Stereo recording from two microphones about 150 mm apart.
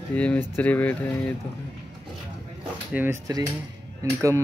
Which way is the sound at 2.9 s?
10° right (ahead or behind).